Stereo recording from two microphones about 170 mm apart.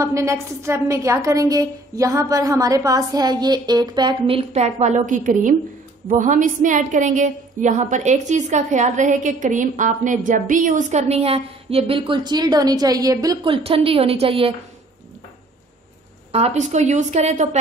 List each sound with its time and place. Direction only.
0.0 s a woman's voice: 20° right (ahead or behind); by 14.5 s 35° right (ahead or behind)
16.3 s a woman's voice: 35° right (ahead or behind)